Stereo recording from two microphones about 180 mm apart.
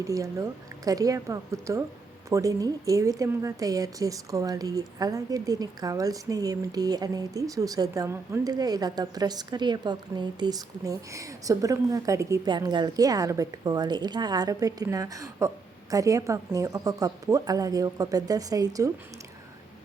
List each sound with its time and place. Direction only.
0.0 s a woman's voice: 15° right (ahead or behind)